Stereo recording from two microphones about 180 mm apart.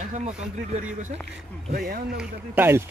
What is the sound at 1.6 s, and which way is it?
Speech, 50° right (ahead or behind).